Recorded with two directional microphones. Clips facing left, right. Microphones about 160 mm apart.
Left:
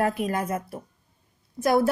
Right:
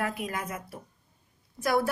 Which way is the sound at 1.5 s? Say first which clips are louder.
Left 5 dB; 25° left (ahead or behind).